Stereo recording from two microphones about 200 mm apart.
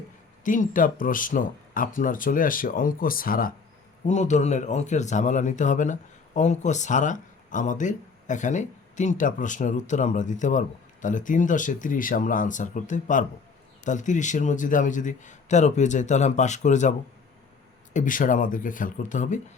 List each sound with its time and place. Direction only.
0.4 s a man's voice: 40° left (ahead or behind)
17.9 s a man's voice: 40° left (ahead or behind)